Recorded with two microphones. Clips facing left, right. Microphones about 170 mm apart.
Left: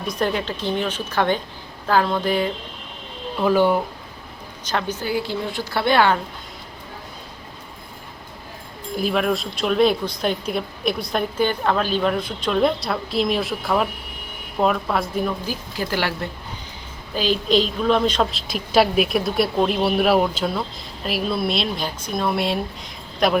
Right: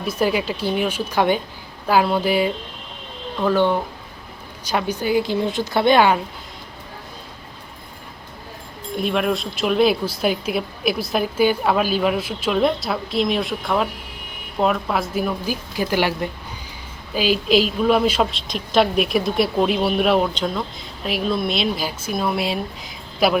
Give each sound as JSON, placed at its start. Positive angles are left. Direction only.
{"t": 0.0, "sound": "speech", "side_deg": -5}
{"t": 3.3, "sound": "speech", "side_deg": 10}
{"t": 4.6, "sound": "speech", "side_deg": -10}
{"t": 9.0, "sound": "a woman's voice", "side_deg": 0}